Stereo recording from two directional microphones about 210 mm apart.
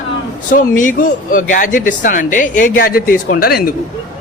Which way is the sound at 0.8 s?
40° left (ahead or behind).